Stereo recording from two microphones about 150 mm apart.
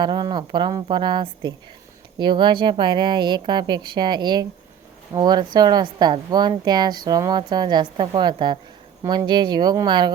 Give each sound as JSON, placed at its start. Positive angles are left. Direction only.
{"t": 0.0, "sound": "a woman's voice", "side_deg": -30}